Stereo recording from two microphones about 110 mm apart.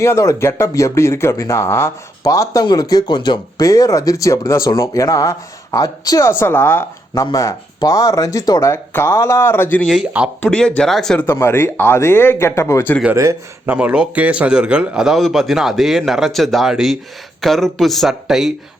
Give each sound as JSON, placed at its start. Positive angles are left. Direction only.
{"t": 0.0, "sound": "speech", "side_deg": 25}
{"t": 3.6, "sound": "speech", "side_deg": 30}
{"t": 7.1, "sound": "speech", "side_deg": 35}
{"t": 9.8, "sound": "a man's voice", "side_deg": 0}
{"t": 11.3, "sound": "speech", "side_deg": 20}
{"t": 13.7, "sound": "a man's voice", "side_deg": -15}